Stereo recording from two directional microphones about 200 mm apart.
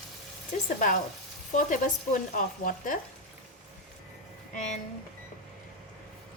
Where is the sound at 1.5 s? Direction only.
40° left (ahead or behind).